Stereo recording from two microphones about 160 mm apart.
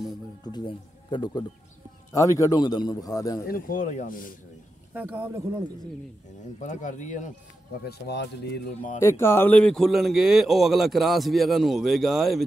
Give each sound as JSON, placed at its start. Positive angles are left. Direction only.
{"t": 0.4, "sound": "a man's voice", "side_deg": 25}
{"t": 3.4, "sound": "speech", "side_deg": 60}
{"t": 4.9, "sound": "speech", "side_deg": -10}
{"t": 6.6, "sound": "speech", "side_deg": 50}
{"t": 7.8, "sound": "speech", "side_deg": 90}
{"t": 9.0, "sound": "speech", "side_deg": 15}